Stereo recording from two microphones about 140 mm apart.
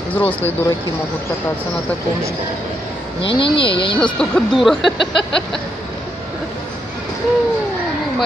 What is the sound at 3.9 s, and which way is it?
Speech, 5° left (ahead or behind).